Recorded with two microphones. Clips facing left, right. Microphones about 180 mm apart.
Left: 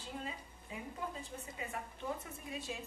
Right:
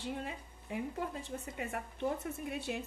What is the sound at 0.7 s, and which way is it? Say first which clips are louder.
A woman's voice: right 6 dB; 70° right (ahead or behind).